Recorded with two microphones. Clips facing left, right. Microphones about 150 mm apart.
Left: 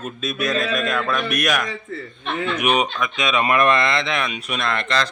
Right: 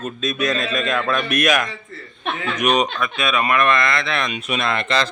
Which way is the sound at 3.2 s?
20° left (ahead or behind).